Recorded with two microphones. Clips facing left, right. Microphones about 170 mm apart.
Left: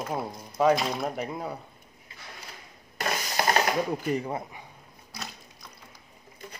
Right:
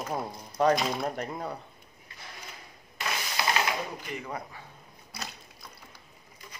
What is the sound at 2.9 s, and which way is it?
Rub, 45° left (ahead or behind).